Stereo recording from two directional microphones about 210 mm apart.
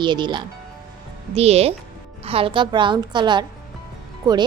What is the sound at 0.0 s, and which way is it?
A woman's voice, 20° right (ahead or behind).